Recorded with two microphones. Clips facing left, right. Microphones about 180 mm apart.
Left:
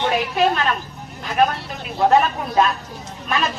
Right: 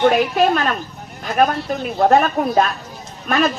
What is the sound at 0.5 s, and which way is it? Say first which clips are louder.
A woman's voice: right 2 dB; 45° right (ahead or behind).